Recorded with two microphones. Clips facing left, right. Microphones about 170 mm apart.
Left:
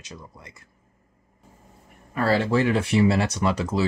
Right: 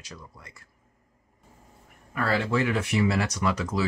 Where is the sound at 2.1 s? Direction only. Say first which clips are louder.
Left 4 dB; 30° left (ahead or behind).